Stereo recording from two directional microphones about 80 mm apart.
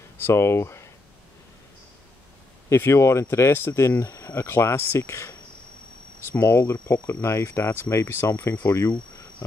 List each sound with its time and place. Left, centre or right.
0.2 s speech: left
2.7 s speech: left
6.4 s speech: left